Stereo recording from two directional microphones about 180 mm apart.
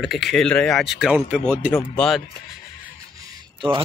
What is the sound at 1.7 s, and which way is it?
Speech, 10° left (ahead or behind).